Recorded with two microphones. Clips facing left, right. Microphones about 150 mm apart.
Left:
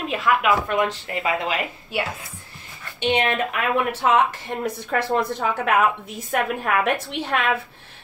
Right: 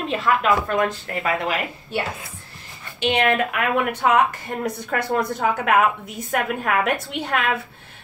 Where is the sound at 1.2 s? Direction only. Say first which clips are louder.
Right 1 dB; 20° left (ahead or behind).